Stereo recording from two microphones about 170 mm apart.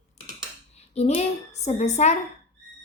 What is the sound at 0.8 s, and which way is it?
A woman's voice, 40° left (ahead or behind).